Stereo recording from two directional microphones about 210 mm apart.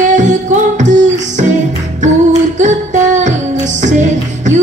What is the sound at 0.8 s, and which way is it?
Music, 35° right (ahead or behind).